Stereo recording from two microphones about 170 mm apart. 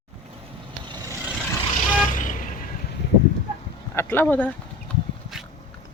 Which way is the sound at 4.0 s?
10° left (ahead or behind).